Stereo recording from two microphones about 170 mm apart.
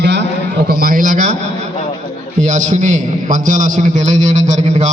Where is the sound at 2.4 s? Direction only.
45° right (ahead or behind).